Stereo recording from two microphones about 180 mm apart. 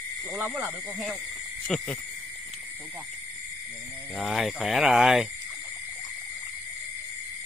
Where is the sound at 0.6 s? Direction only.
10° right (ahead or behind).